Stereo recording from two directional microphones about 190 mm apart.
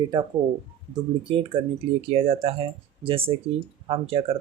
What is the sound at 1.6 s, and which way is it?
Speech, 30° right (ahead or behind).